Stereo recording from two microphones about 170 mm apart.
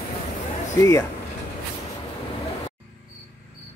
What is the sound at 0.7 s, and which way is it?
Speech, 20° left (ahead or behind).